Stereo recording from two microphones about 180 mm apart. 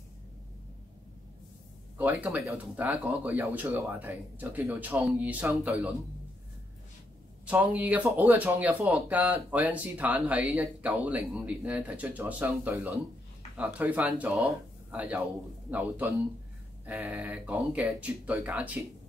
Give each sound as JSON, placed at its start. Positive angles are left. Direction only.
{"t": 2.0, "sound": "speech", "side_deg": -10}
{"t": 7.4, "sound": "speech", "side_deg": -10}